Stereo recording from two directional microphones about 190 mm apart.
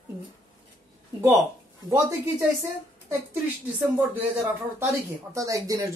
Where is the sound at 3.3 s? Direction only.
10° right (ahead or behind).